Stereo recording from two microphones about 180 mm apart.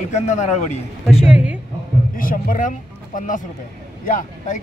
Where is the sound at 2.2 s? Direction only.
50° left (ahead or behind).